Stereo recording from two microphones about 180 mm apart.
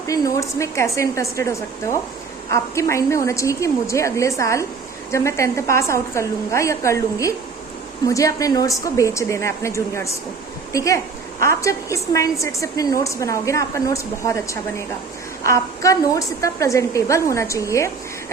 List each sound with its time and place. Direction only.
0.1 s a woman's voice: 15° left (ahead or behind)